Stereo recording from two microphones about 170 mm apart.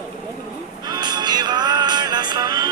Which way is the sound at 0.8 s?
25° right (ahead or behind).